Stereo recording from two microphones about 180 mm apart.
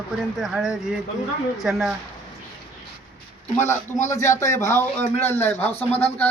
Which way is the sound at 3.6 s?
40° left (ahead or behind).